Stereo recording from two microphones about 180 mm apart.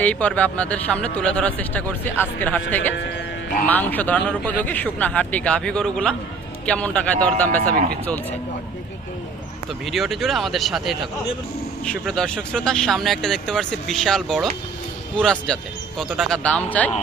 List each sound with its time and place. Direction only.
0.0 s speech: 5° left (ahead or behind)
3.7 s speech: 10° left (ahead or behind)
7.6 s speech: 55° right (ahead or behind)
9.8 s speech: centre (ahead or behind)